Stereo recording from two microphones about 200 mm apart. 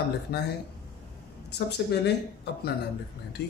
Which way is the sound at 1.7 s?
55° left (ahead or behind).